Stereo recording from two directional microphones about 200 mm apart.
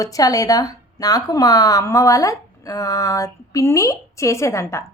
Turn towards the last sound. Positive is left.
turn(degrees=15)  # may be behind; listen again after turning